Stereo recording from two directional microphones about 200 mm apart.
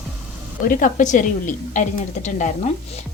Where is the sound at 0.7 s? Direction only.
40° left (ahead or behind).